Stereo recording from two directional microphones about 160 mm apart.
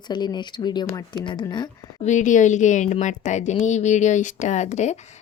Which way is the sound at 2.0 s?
50° left (ahead or behind).